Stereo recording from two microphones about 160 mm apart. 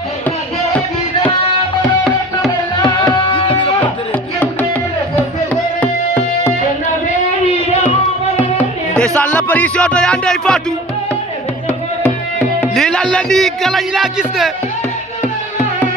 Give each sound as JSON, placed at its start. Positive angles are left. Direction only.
{"t": 3.3, "sound": "a sound", "side_deg": 30}
{"t": 5.1, "sound": "music", "side_deg": 10}
{"t": 8.9, "sound": "music", "side_deg": 10}
{"t": 12.0, "sound": "music", "side_deg": 5}